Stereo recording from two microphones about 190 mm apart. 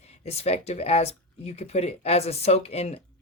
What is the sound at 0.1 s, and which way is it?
Speech, 35° left (ahead or behind).